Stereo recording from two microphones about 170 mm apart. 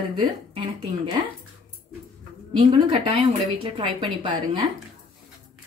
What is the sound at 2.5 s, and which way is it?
A woman's voice, 30° right (ahead or behind).